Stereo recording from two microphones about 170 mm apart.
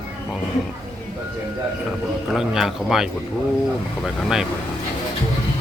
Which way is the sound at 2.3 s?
Centre (ahead or behind).